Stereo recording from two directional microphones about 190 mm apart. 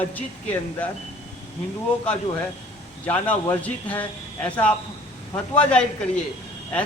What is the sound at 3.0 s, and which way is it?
A man's voice, 10° left (ahead or behind).